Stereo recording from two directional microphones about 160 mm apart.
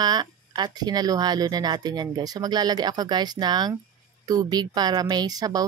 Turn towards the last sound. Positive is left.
turn(degrees=-25)  # may be behind; listen again after turning